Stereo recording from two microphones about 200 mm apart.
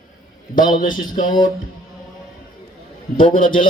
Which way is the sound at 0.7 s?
45° left (ahead or behind).